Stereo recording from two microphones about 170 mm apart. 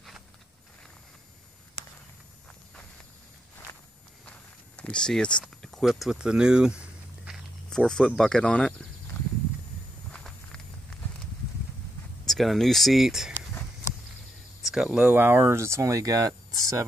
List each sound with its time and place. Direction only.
4.3 s speech: 5° left (ahead or behind)
7.2 s a sound: centre (ahead or behind)
8.2 s speech: 5° left (ahead or behind)
10.1 s a sound: 5° left (ahead or behind)
12.3 s speech: centre (ahead or behind)
14.7 s speech: 5° right (ahead or behind); by 16.8 s 20° right (ahead or behind)